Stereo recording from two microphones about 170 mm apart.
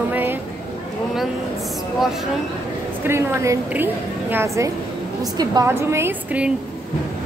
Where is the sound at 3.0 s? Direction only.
15° right (ahead or behind).